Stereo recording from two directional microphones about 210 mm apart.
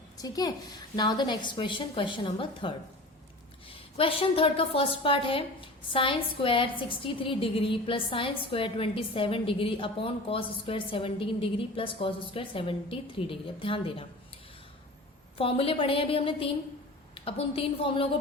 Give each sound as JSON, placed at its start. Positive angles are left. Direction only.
{"t": 0.2, "sound": "a woman's voice", "side_deg": 15}
{"t": 15.4, "sound": "a woman's voice", "side_deg": 25}